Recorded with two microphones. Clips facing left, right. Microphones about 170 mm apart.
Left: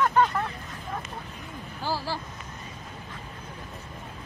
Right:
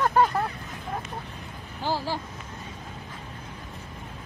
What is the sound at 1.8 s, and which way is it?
Speech, 15° right (ahead or behind).